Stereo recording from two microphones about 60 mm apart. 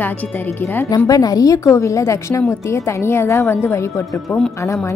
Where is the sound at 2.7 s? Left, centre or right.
Left.